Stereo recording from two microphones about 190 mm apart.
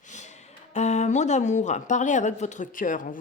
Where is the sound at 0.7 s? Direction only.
35° left (ahead or behind).